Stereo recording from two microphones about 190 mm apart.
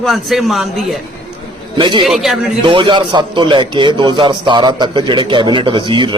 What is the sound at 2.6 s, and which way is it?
A man's voice, 25° right (ahead or behind).